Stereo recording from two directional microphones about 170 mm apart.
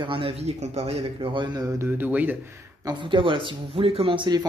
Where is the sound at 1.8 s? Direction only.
10° right (ahead or behind).